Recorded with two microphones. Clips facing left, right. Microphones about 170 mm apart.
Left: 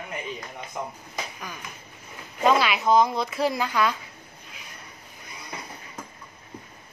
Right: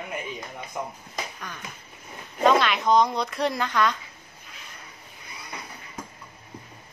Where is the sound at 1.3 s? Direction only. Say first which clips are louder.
Left 1 dB; 10° left (ahead or behind).